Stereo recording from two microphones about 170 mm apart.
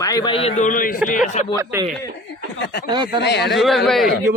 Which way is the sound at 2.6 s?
70° left (ahead or behind).